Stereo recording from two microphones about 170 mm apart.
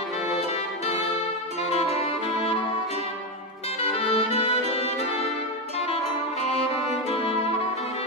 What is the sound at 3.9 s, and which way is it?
Music, 35° left (ahead or behind).